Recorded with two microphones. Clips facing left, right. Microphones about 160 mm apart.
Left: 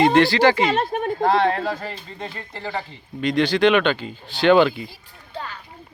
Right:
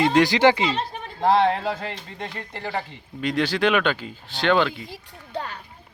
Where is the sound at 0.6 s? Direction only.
55° left (ahead or behind).